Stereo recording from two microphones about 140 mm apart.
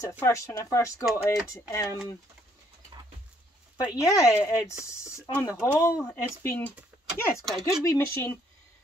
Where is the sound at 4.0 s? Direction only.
20° left (ahead or behind).